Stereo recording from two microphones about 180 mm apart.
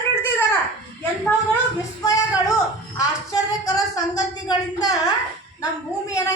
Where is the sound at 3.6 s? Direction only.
20° left (ahead or behind).